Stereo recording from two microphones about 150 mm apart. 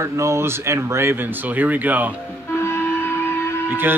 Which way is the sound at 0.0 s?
20° right (ahead or behind).